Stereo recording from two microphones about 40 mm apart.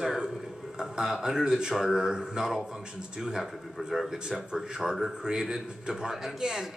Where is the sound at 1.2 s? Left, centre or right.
Centre.